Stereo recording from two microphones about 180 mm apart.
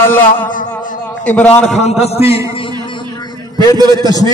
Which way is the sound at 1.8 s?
35° left (ahead or behind).